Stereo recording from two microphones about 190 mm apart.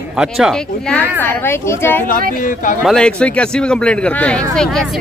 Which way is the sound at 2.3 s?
45° left (ahead or behind).